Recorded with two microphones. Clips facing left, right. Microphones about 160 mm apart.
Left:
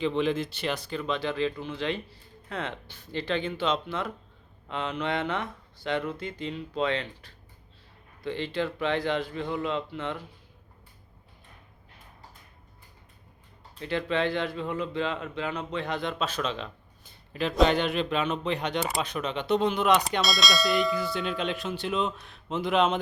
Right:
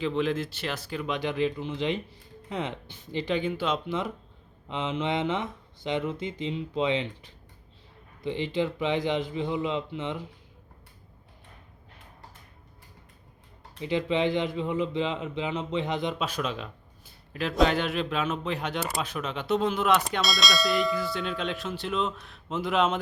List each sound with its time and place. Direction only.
0.0 s speech: centre (ahead or behind); by 10.3 s 20° right (ahead or behind)
13.7 s a man's voice: 15° right (ahead or behind)